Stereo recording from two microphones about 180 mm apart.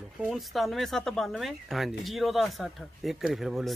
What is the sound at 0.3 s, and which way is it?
Speech, centre (ahead or behind).